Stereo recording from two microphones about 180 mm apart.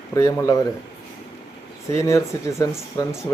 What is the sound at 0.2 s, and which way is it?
Speech, 15° left (ahead or behind).